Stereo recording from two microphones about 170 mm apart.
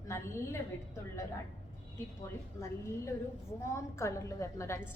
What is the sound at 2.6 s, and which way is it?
A woman's voice, 15° left (ahead or behind).